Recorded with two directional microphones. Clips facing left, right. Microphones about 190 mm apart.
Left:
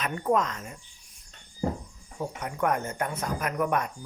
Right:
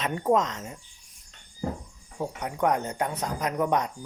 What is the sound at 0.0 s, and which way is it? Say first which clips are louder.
Speech: right 2 dB; 25° right (ahead or behind).